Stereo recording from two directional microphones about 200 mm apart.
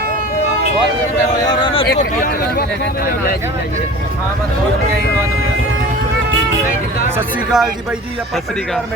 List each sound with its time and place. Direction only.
1.5 s speech: 25° left (ahead or behind)
2.0 s a man's voice: 45° left (ahead or behind)
7.2 s speech: centre (ahead or behind)